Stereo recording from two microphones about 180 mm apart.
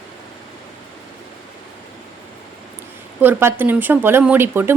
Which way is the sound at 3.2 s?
10° right (ahead or behind).